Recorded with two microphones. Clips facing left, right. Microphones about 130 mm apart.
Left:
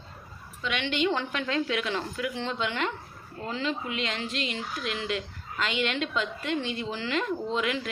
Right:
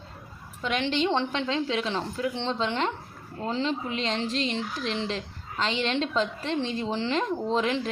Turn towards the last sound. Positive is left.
turn(degrees=-35)  # may be behind; listen again after turning